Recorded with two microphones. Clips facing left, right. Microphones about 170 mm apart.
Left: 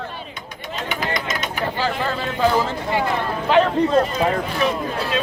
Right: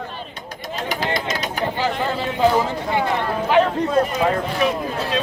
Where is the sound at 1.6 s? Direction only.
20° right (ahead or behind).